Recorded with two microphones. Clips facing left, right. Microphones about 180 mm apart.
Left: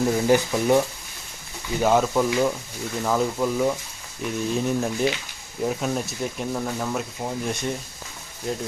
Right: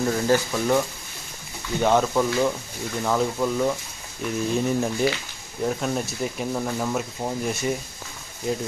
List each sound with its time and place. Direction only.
0.0 s speech: 15° left (ahead or behind)
1.8 s speech: 5° left (ahead or behind)